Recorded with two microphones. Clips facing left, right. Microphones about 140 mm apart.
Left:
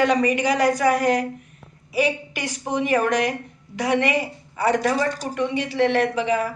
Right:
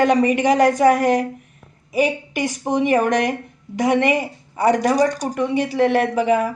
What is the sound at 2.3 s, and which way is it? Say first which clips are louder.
A woman's voice: right 5 dB; 20° right (ahead or behind).